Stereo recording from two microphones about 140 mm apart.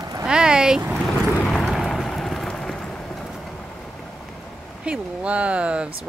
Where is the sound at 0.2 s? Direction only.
5° right (ahead or behind).